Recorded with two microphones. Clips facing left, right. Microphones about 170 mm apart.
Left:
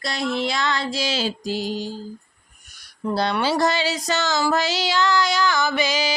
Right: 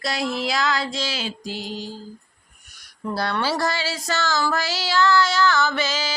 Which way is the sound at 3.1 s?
20° left (ahead or behind).